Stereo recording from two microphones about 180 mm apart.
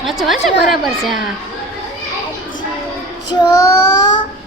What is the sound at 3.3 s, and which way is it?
Child singing, 20° left (ahead or behind).